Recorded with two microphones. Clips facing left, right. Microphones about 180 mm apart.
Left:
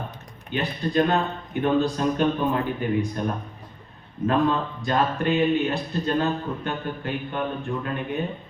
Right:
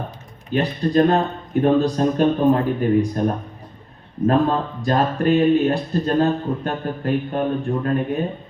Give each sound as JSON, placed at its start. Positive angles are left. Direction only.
{"t": 0.5, "sound": "speech", "side_deg": -40}
{"t": 4.3, "sound": "speech", "side_deg": -35}